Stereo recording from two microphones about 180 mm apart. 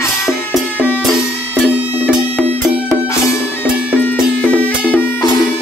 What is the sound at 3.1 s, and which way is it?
Music, 15° left (ahead or behind).